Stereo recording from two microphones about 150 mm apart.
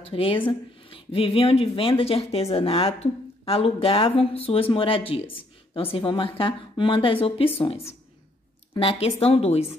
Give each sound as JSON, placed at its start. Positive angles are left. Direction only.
{"t": 0.0, "sound": "speech", "side_deg": 40}
{"t": 8.7, "sound": "speech", "side_deg": 40}